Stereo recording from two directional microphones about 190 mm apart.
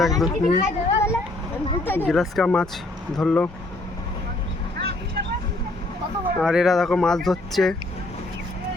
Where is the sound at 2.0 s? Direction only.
Centre (ahead or behind).